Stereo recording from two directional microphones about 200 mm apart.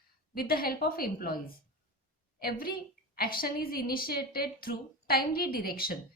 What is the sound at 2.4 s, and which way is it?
A woman's voice, 50° left (ahead or behind).